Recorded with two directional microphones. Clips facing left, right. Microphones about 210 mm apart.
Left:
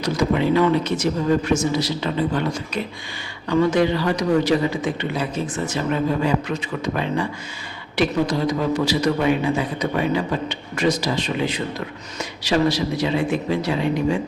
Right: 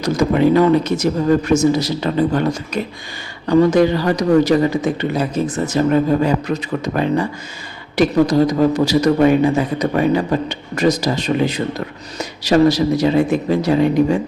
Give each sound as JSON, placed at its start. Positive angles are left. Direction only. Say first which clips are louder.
{"t": 0.0, "sound": "a man's voice", "louder": "right 5 dB", "side_deg": -45}